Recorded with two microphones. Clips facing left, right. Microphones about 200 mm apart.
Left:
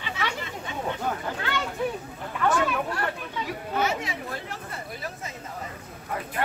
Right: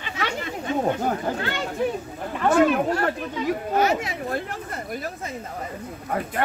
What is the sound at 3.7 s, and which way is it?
Speech, 45° right (ahead or behind).